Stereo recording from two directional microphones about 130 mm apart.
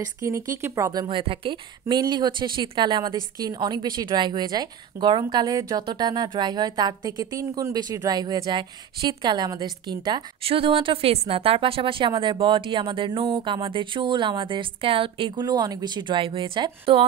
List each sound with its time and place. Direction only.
0.2 s speech: 25° right (ahead or behind)
1.0 s speech: 40° right (ahead or behind)
10.4 s speech: 45° right (ahead or behind)